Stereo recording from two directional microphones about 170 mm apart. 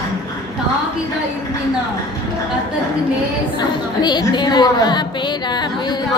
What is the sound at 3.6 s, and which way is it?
A woman's voice, 25° left (ahead or behind).